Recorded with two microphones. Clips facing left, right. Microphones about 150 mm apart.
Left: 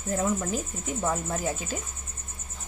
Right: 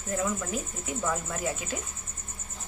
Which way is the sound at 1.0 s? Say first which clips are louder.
Left 2 dB; 35° left (ahead or behind).